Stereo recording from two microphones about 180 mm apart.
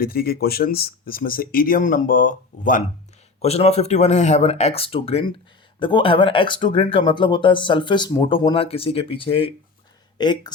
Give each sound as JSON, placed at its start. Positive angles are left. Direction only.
{"t": 0.0, "sound": "speech", "side_deg": 55}
{"t": 3.4, "sound": "speech", "side_deg": 35}